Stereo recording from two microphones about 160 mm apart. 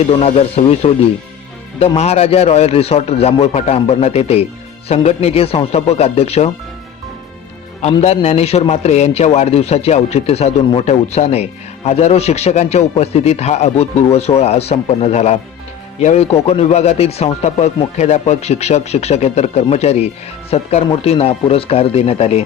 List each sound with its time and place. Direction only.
0.1 s a man's voice: 40° left (ahead or behind)
2.0 s a man's voice: 40° left (ahead or behind)
8.0 s a man's voice: 40° left (ahead or behind)